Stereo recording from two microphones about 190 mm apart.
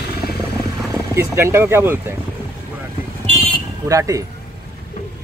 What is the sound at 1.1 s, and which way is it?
Speech, 15° right (ahead or behind).